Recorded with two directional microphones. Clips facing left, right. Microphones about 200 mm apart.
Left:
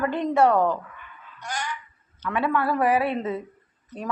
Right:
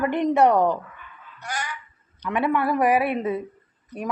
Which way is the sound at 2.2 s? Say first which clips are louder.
Right 2 dB; 15° right (ahead or behind).